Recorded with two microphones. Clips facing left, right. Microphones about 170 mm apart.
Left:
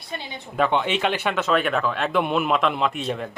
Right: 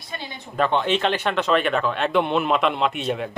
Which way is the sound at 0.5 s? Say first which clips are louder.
Right 1 dB; 10° left (ahead or behind).